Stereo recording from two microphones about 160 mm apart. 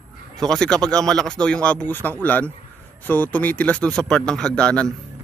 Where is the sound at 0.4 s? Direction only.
5° left (ahead or behind).